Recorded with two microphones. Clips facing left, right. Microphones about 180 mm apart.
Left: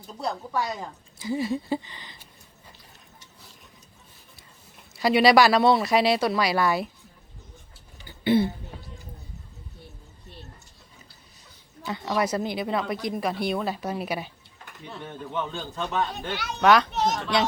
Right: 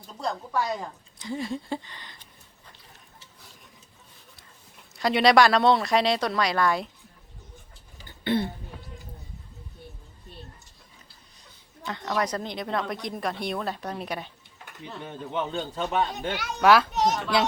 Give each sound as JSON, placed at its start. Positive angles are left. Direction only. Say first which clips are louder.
{"t": 0.2, "sound": "speech", "louder": "even", "side_deg": 5}
{"t": 4.9, "sound": "speech", "louder": "left 1 dB", "side_deg": 5}
{"t": 8.0, "sound": "a sound", "louder": "left 4 dB", "side_deg": 5}
{"t": 11.8, "sound": "speech", "louder": "left 2 dB", "side_deg": 5}
{"t": 15.0, "sound": "a man's voice", "louder": "right 1 dB", "side_deg": -20}
{"t": 16.6, "sound": "a child's voice", "louder": "even", "side_deg": -5}